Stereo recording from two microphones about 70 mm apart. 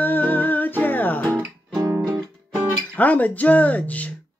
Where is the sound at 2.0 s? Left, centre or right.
Right.